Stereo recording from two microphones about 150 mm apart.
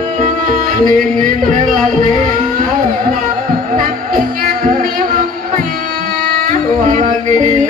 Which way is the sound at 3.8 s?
70° right (ahead or behind).